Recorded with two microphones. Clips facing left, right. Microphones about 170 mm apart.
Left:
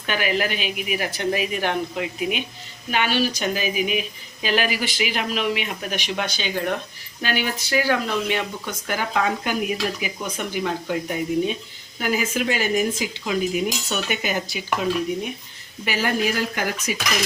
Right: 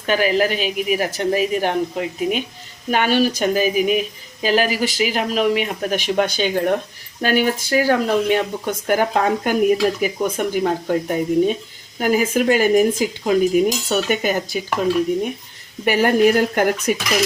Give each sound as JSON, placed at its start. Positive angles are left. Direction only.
{"t": 0.0, "sound": "speech", "side_deg": -35}
{"t": 15.8, "sound": "speech", "side_deg": -55}